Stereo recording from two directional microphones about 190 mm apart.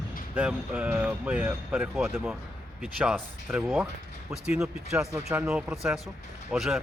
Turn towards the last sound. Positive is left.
turn(degrees=-5)  # may be behind; listen again after turning